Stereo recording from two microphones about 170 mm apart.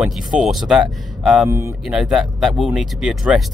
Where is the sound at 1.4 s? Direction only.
15° right (ahead or behind).